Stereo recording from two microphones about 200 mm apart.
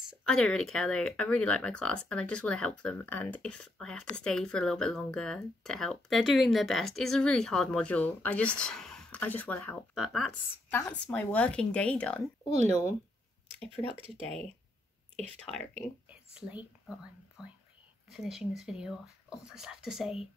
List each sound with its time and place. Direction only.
0.1 s speech: 5° left (ahead or behind)
13.9 s speech: 25° right (ahead or behind)
14.2 s speech: 5° left (ahead or behind)